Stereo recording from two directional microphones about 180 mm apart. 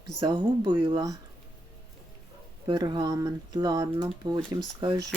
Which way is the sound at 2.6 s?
25° right (ahead or behind).